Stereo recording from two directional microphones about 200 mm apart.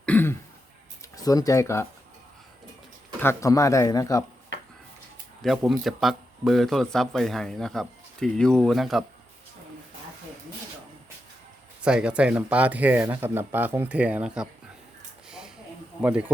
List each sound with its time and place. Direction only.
0.0 s throat clearing: 10° left (ahead or behind)
1.1 s speech: 20° left (ahead or behind)
3.2 s speech: 15° left (ahead or behind)
5.4 s speech: centre (ahead or behind)
11.8 s speech: 5° right (ahead or behind)
15.3 s a sound: centre (ahead or behind)
16.0 s speech: 5° right (ahead or behind)